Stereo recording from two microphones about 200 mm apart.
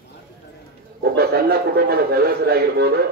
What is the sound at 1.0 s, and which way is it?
A man's voice, 55° right (ahead or behind).